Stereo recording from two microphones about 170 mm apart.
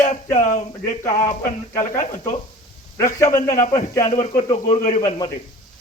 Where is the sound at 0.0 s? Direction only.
45° left (ahead or behind).